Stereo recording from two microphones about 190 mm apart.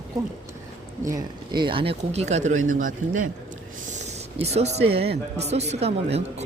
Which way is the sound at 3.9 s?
35° right (ahead or behind).